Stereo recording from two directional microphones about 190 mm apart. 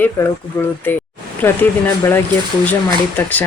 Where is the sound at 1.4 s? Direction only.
10° left (ahead or behind).